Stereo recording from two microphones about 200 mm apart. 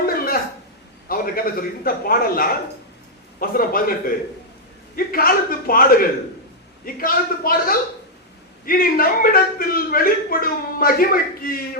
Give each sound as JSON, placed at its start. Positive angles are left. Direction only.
{"t": 0.0, "sound": "a sound", "side_deg": 45}
{"t": 1.0, "sound": "a man's voice", "side_deg": 45}
{"t": 4.9, "sound": "a man's voice", "side_deg": 45}